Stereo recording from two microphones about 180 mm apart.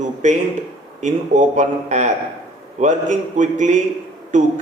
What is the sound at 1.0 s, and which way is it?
A man's voice, 45° right (ahead or behind).